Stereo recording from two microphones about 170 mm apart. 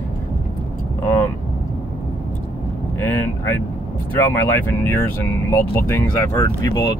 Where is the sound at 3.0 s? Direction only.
10° left (ahead or behind).